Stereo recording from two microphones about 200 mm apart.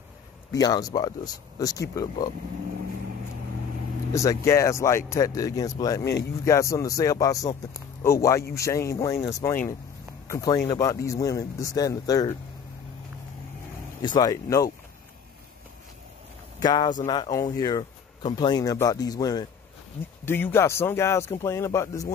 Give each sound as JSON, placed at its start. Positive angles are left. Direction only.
{"t": 0.5, "sound": "speech", "side_deg": 20}
{"t": 4.1, "sound": "speech", "side_deg": 15}
{"t": 14.0, "sound": "speech", "side_deg": 20}
{"t": 16.5, "sound": "speech", "side_deg": 20}